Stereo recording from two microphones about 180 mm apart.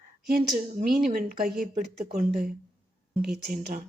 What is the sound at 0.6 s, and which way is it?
Speech, 45° right (ahead or behind).